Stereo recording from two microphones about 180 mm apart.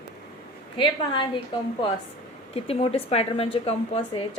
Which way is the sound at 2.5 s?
30° left (ahead or behind).